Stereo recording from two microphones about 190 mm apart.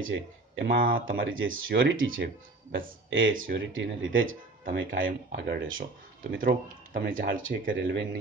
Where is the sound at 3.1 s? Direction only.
90° right.